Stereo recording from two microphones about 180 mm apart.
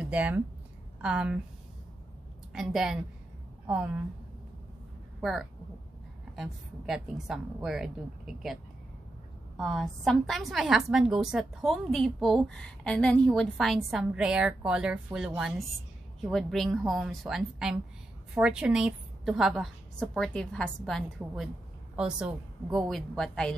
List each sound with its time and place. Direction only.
0.0 s a woman's voice: 10° right (ahead or behind)
2.5 s a woman's voice: 5° right (ahead or behind)
5.2 s a woman's voice: centre (ahead or behind)
9.6 s a woman's voice: centre (ahead or behind)